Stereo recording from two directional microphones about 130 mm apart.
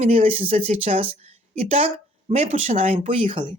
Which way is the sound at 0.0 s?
50° right (ahead or behind).